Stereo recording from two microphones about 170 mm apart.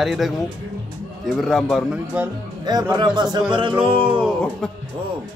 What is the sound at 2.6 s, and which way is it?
Speech, 25° right (ahead or behind).